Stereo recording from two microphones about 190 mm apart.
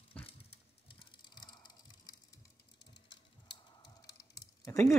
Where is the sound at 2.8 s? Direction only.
65° left (ahead or behind).